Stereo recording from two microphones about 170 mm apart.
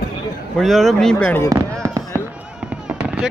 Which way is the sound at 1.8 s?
20° right (ahead or behind).